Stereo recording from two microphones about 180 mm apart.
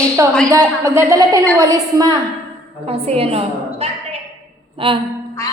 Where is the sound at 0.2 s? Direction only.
15° right (ahead or behind).